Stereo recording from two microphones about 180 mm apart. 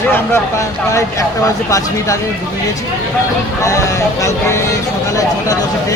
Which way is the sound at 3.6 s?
15° left (ahead or behind).